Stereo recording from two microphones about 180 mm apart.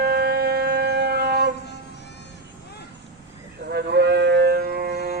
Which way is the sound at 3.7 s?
65° right (ahead or behind).